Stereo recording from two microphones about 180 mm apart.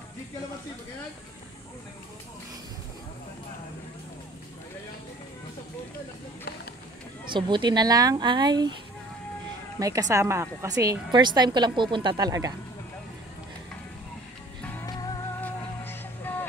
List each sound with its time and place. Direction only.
7.2 s a woman's voice: 25° right (ahead or behind)
9.8 s a woman's voice: 20° right (ahead or behind)
14.6 s music: 10° left (ahead or behind)
14.9 s music: 20° left (ahead or behind)
15.4 s music: 10° left (ahead or behind)